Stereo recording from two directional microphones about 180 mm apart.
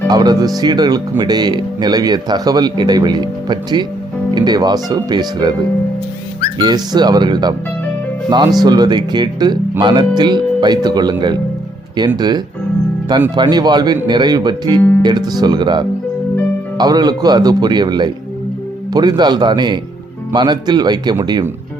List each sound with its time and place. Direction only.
0.1 s speech: 20° right (ahead or behind)
6.6 s speech: 25° right (ahead or behind)